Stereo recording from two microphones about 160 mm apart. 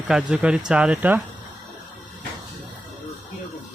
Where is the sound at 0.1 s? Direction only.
5° right (ahead or behind).